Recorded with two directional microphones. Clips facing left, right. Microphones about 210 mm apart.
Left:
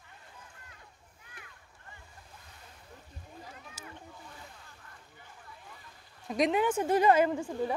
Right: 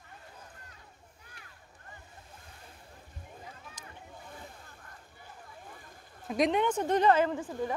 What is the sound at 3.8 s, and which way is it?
Boat, 5° left (ahead or behind).